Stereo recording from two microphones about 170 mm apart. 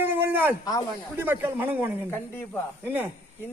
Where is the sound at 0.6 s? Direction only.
20° left (ahead or behind).